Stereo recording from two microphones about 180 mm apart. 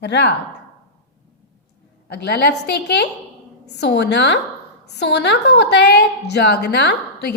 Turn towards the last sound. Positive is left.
turn(degrees=70)  # may be behind; listen again after turning